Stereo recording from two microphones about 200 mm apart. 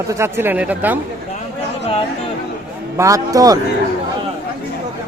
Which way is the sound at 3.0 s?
15° right (ahead or behind).